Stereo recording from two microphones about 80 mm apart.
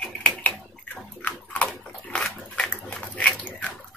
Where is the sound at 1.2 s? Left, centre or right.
Centre.